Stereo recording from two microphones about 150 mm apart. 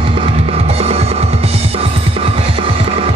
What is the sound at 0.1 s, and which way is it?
Music, 40° right (ahead or behind).